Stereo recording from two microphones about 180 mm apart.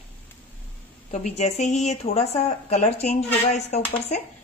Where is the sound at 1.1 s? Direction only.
40° left (ahead or behind).